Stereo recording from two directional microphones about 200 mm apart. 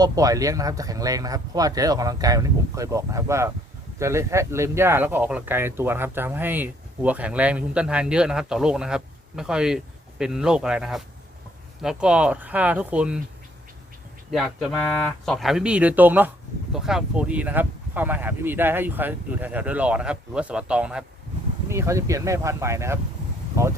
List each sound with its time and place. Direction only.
0.0 s speech: 15° right (ahead or behind)
14.3 s speech: centre (ahead or behind)